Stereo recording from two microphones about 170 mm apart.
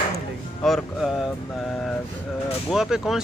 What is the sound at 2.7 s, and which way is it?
Speech, centre (ahead or behind).